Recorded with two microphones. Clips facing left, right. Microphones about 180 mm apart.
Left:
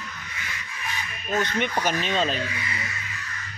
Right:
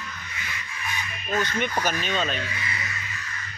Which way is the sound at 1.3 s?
25° left (ahead or behind).